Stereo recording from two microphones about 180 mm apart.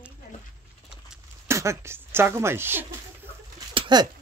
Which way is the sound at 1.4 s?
15° right (ahead or behind).